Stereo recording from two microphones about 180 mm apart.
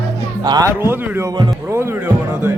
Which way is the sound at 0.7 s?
10° right (ahead or behind).